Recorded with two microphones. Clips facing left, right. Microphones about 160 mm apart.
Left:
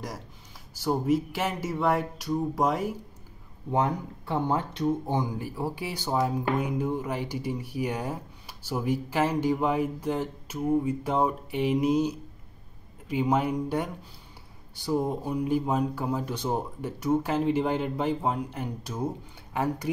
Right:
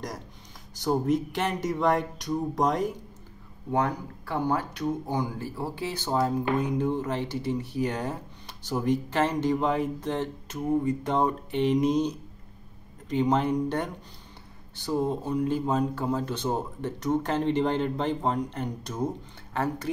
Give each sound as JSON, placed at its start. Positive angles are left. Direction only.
{"t": 0.7, "sound": "speech", "side_deg": 5}
{"t": 3.7, "sound": "speech", "side_deg": 20}
{"t": 14.8, "sound": "speech", "side_deg": 10}